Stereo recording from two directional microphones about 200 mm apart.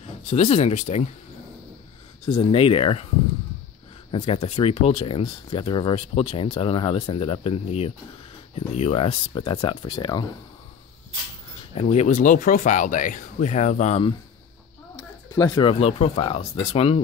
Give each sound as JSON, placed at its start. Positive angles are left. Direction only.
{"t": 0.0, "sound": "speech", "side_deg": 35}
{"t": 2.2, "sound": "speech", "side_deg": 30}
{"t": 4.1, "sound": "speech", "side_deg": 30}
{"t": 11.7, "sound": "speech", "side_deg": 35}
{"t": 15.0, "sound": "speech", "side_deg": 20}